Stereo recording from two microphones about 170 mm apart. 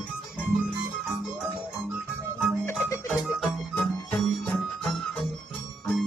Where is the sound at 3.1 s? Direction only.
5° left (ahead or behind).